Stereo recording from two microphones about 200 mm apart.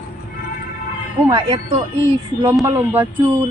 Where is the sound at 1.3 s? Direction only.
30° right (ahead or behind).